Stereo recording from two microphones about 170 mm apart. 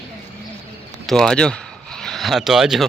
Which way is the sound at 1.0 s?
Centre (ahead or behind).